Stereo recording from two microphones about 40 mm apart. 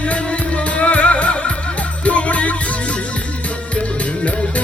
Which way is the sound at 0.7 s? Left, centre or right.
Left.